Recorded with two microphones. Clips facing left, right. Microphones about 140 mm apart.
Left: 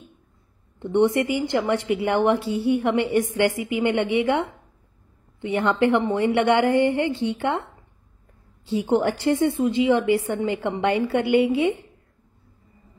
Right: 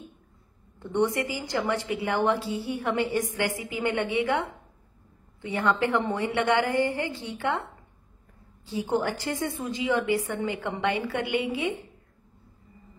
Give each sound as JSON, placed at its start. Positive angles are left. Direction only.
{"t": 0.7, "sound": "a woman's voice", "side_deg": 25}
{"t": 8.6, "sound": "a woman's voice", "side_deg": 25}